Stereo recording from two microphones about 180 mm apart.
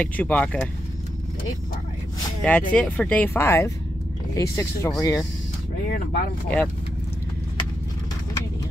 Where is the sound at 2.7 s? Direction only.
5° left (ahead or behind).